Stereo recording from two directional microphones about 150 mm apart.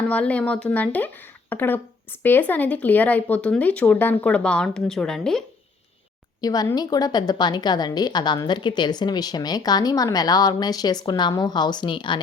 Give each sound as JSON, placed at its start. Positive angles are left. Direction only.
{"t": 0.1, "sound": "speech", "side_deg": 10}
{"t": 6.4, "sound": "a woman's voice", "side_deg": 25}